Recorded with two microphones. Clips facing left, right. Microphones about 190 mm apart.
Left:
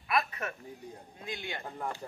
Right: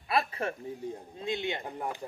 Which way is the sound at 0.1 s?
30° right (ahead or behind).